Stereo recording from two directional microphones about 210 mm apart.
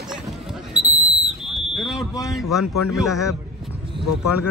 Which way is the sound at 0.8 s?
30° right (ahead or behind).